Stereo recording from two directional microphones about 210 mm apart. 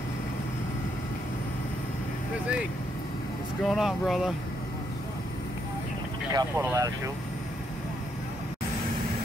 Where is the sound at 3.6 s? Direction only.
Centre (ahead or behind).